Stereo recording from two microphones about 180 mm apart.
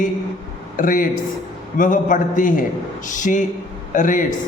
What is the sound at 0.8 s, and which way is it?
Speech, 50° left (ahead or behind).